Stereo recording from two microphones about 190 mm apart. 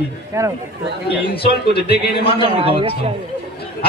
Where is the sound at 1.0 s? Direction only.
60° left (ahead or behind).